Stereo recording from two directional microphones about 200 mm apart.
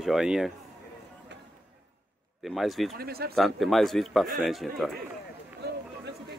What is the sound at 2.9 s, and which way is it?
Speech, 50° right (ahead or behind).